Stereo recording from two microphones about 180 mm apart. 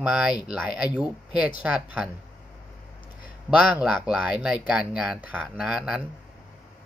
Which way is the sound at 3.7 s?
5° right (ahead or behind).